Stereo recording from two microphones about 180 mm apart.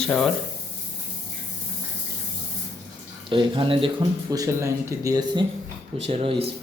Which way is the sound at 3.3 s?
25° right (ahead or behind).